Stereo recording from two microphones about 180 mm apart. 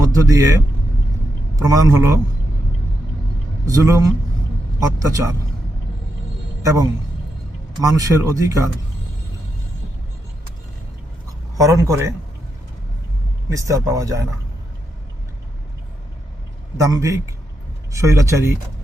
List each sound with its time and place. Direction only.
0.1 s speech: 20° right (ahead or behind)
3.7 s speech: 20° right (ahead or behind)
6.6 s a man's voice: 20° right (ahead or behind)
11.5 s speech: 20° right (ahead or behind)
13.5 s speech: 20° right (ahead or behind)
16.7 s speech: 20° right (ahead or behind)